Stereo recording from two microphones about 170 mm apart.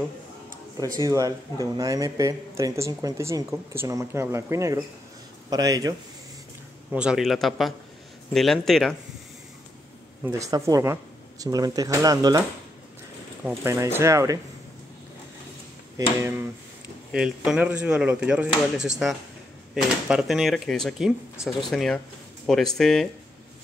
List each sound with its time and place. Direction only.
0.7 s speech: 20° right (ahead or behind)
6.9 s speech: 5° right (ahead or behind)
10.2 s speech: 15° right (ahead or behind)
16.2 s speech: 15° right (ahead or behind)
17.1 s speech: 5° right (ahead or behind)